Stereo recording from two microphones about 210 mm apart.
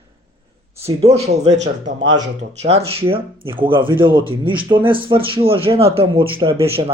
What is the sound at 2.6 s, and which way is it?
Speech, 30° right (ahead or behind).